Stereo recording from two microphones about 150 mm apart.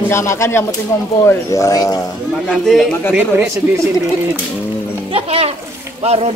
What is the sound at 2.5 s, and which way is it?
Speech, centre (ahead or behind).